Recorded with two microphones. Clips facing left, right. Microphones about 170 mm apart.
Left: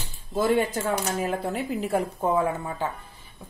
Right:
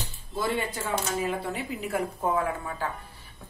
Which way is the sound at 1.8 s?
30° left (ahead or behind).